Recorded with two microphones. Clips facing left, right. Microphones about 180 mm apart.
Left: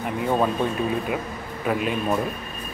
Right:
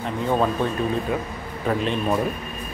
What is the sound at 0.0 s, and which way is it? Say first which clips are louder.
Speech: even; 10° left (ahead or behind).